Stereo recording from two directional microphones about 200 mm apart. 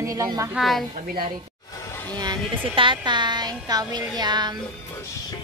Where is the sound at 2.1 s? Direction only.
20° right (ahead or behind).